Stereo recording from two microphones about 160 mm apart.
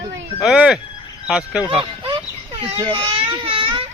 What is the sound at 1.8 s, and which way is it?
Baby cry, 30° right (ahead or behind).